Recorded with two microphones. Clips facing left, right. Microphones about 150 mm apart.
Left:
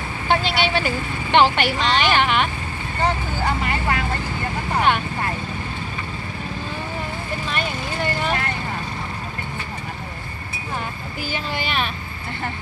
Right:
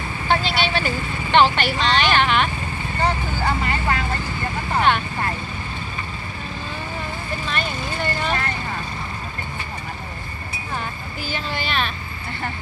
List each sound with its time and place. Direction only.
0.3 s speech: 15° left (ahead or behind)
7.4 s speech: 10° left (ahead or behind)
11.2 s speech: 10° left (ahead or behind)